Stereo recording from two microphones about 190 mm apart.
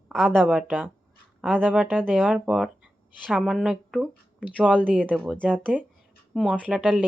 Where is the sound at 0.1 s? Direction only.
Centre (ahead or behind).